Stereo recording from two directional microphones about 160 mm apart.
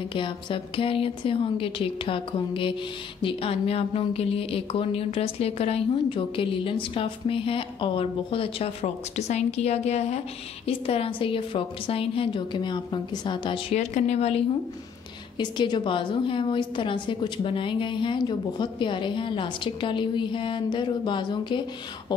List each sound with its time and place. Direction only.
0.1 s a woman's voice: 30° left (ahead or behind)
13.7 s speech: 45° left (ahead or behind)
15.3 s a woman's voice: 30° left (ahead or behind)